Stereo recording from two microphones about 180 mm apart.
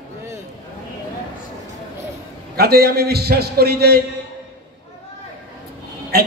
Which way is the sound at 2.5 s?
60° right (ahead or behind).